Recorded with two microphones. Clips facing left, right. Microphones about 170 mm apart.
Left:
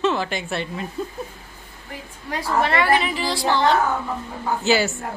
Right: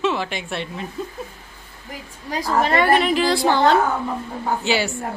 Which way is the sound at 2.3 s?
40° right (ahead or behind).